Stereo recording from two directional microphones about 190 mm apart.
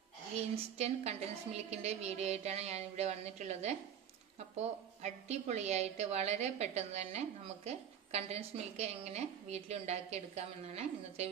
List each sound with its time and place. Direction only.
0.4 s a woman's voice: 35° right (ahead or behind)